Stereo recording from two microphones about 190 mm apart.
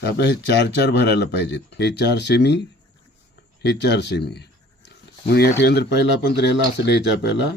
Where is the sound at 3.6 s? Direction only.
65° left (ahead or behind).